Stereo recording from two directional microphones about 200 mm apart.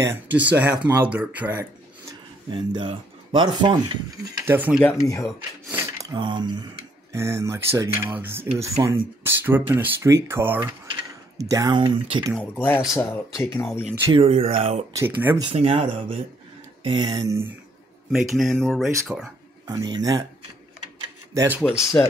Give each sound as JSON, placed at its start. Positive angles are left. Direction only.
{"t": 0.0, "sound": "speech", "side_deg": -10}
{"t": 2.5, "sound": "speech", "side_deg": -25}
{"t": 4.5, "sound": "speech", "side_deg": -10}
{"t": 4.8, "sound": "speech", "side_deg": 15}
{"t": 5.2, "sound": "speech", "side_deg": -10}
{"t": 12.4, "sound": "speech", "side_deg": 10}
{"t": 14.1, "sound": "speech", "side_deg": -30}
{"t": 15.0, "sound": "speech", "side_deg": -15}
{"t": 15.4, "sound": "speech", "side_deg": -30}
{"t": 18.1, "sound": "speech", "side_deg": 0}
{"t": 19.7, "sound": "speech", "side_deg": -20}
{"t": 21.3, "sound": "speech", "side_deg": -15}
{"t": 22.0, "sound": "speech", "side_deg": 10}